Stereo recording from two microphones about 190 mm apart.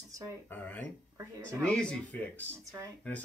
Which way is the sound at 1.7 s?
5° left (ahead or behind).